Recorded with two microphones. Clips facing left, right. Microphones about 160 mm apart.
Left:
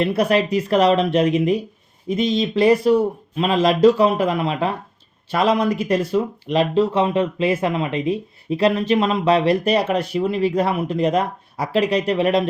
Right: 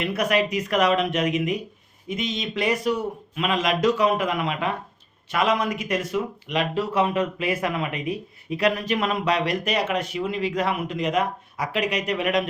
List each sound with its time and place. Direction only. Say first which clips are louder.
0.0 s speech: left 5 dB; 30° left (ahead or behind)